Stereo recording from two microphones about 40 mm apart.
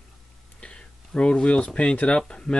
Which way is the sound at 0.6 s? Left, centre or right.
Left.